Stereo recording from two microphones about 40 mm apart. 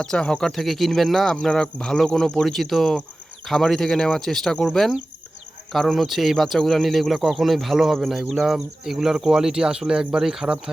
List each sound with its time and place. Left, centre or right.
0.0 s speech: centre
0.5 s speech: centre
1.4 s speech: centre